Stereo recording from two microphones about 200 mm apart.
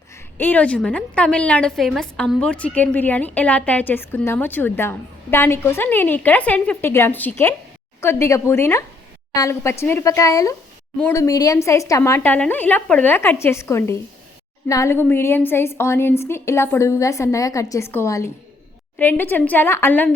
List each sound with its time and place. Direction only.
0.3 s a woman's voice: 10° left (ahead or behind)